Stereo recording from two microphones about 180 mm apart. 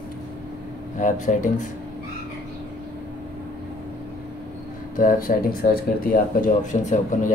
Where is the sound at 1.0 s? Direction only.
45° left (ahead or behind).